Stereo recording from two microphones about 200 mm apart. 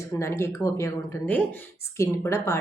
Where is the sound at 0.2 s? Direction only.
15° left (ahead or behind).